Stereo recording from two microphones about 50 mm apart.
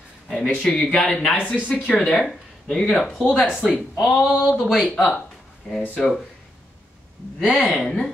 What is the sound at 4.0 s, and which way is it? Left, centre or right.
Speech, centre.